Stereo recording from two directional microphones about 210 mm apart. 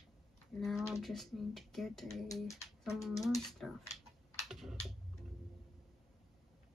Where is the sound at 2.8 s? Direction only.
Centre (ahead or behind).